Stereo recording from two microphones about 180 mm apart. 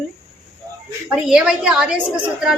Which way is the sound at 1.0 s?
5° right (ahead or behind).